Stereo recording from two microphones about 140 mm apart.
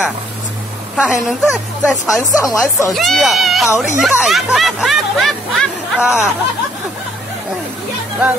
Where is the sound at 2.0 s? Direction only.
20° left (ahead or behind).